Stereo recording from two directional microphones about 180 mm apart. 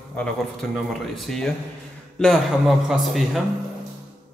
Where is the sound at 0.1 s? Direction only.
5° left (ahead or behind).